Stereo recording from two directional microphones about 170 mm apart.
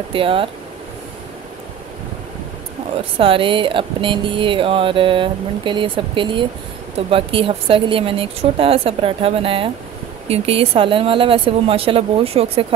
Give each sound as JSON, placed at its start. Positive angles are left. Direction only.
{"t": 0.1, "sound": "a woman's voice", "side_deg": -30}
{"t": 3.2, "sound": "a woman's voice", "side_deg": -30}